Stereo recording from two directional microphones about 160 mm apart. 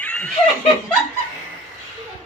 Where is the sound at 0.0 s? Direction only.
5° left (ahead or behind).